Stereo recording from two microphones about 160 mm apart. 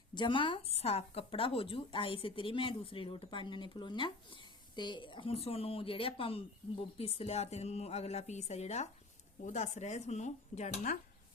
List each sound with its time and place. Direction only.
0.1 s speech: 30° left (ahead or behind); by 10.9 s 45° left (ahead or behind)